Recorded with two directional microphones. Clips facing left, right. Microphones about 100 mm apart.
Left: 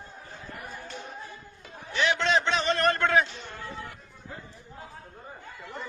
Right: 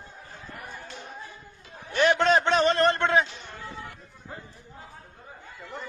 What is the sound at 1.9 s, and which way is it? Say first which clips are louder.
Speech: right 4 dB; 50° right (ahead or behind).